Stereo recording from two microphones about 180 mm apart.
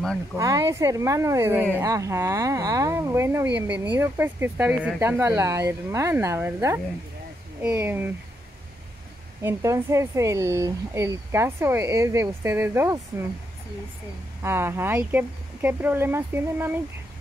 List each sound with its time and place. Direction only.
0.4 s speech: 20° right (ahead or behind)
9.4 s speech: 15° right (ahead or behind)
14.4 s speech: 15° right (ahead or behind)